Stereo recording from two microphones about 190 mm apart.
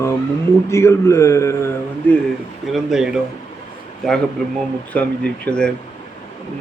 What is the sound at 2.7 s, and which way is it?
Speech, 5° right (ahead or behind).